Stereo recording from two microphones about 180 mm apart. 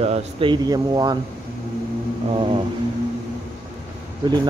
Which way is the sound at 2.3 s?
30° right (ahead or behind).